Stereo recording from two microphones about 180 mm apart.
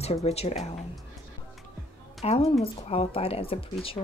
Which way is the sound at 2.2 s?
35° left (ahead or behind).